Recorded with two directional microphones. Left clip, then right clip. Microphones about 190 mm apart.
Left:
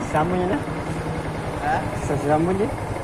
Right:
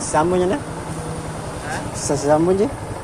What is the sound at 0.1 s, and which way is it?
Speech, 65° right (ahead or behind).